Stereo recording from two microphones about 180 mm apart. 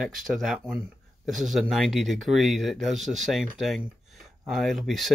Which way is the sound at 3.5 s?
Centre (ahead or behind).